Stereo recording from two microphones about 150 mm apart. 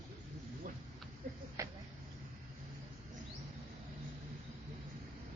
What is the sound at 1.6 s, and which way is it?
Vehicle, 20° right (ahead or behind).